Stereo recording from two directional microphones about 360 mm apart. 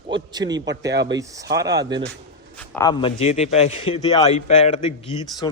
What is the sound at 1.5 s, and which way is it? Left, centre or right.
Speech, centre.